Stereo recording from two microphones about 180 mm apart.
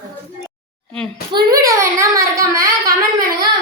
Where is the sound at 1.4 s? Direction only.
20° right (ahead or behind).